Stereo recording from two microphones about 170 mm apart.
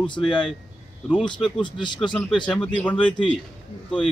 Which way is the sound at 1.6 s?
25° left (ahead or behind).